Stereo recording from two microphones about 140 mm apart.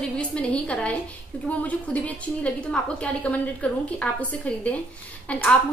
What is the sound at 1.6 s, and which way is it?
A woman's voice, 10° left (ahead or behind).